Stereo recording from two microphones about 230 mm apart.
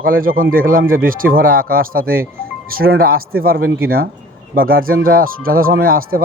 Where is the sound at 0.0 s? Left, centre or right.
Right.